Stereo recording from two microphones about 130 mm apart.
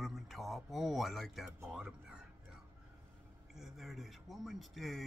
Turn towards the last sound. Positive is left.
turn(degrees=0)  # may be behind; listen again after turning